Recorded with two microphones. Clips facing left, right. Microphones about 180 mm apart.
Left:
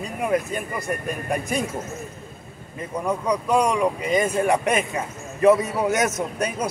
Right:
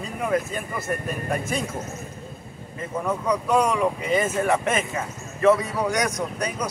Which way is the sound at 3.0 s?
10° left (ahead or behind).